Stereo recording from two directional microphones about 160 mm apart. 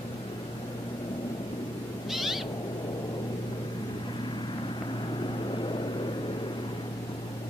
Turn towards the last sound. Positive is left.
turn(degrees=30)  # may be behind; listen again after turning